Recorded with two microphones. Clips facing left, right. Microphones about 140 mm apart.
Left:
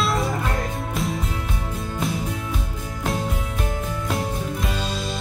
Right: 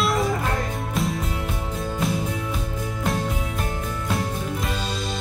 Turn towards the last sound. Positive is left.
turn(degrees=0)  # may be behind; listen again after turning